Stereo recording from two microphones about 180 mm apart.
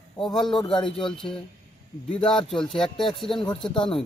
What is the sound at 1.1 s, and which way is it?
Speech, centre (ahead or behind).